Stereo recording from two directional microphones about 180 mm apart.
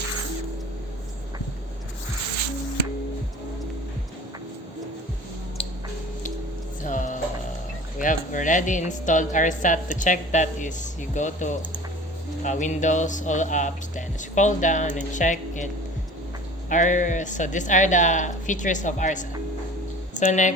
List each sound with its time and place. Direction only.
6.8 s music: 45° left (ahead or behind)
7.9 s a woman's voice: 45° left (ahead or behind)